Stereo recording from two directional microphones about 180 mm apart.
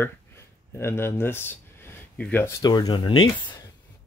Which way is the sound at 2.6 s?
20° left (ahead or behind).